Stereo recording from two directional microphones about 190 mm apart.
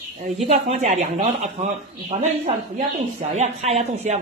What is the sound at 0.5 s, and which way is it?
Speech, 35° right (ahead or behind).